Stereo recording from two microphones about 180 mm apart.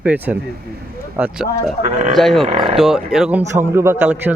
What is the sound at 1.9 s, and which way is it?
Speech, 40° right (ahead or behind).